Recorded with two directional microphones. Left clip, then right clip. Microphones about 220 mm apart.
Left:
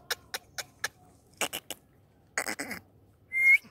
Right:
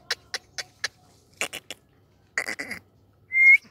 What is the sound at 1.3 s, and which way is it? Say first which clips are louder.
Rodents: right 2 dB; 5° left (ahead or behind).